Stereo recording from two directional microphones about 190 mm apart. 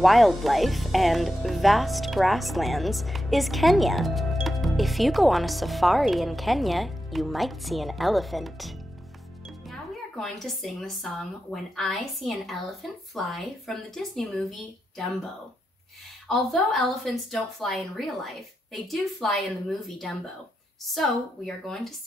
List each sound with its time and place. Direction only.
0.0 s speech: centre (ahead or behind)
16.3 s speech: centre (ahead or behind)